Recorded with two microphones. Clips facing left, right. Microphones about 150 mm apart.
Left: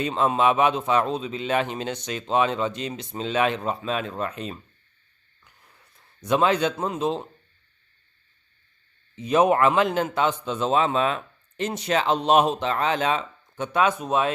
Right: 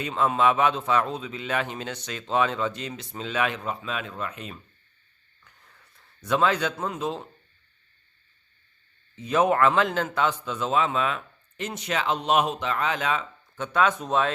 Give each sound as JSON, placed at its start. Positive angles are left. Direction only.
{"t": 0.0, "sound": "a man's voice", "side_deg": 25}
{"t": 6.2, "sound": "a man's voice", "side_deg": 20}
{"t": 9.1, "sound": "a man's voice", "side_deg": 20}